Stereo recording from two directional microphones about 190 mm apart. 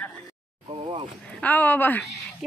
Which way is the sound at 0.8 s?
30° right (ahead or behind).